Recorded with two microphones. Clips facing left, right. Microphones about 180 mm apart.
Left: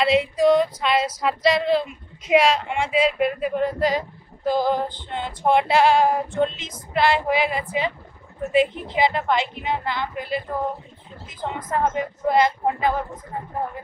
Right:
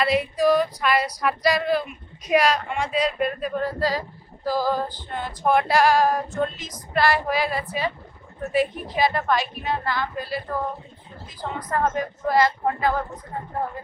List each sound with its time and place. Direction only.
0.0 s female singing: 25° left (ahead or behind)